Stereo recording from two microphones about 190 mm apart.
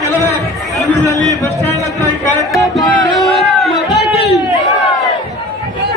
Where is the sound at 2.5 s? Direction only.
Centre (ahead or behind).